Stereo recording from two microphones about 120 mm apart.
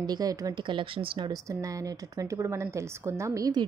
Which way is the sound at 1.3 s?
30° right (ahead or behind).